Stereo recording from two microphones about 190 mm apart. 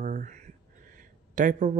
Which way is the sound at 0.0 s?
45° right (ahead or behind).